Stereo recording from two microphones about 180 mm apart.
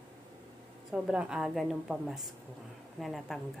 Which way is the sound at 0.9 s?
5° right (ahead or behind).